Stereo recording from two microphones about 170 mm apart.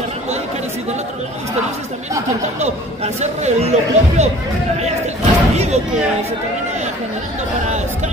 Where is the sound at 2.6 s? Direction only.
40° right (ahead or behind).